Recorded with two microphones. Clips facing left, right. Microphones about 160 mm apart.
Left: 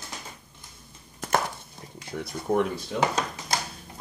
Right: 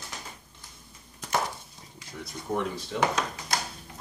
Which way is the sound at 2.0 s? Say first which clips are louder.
Left 7 dB; 60° left (ahead or behind).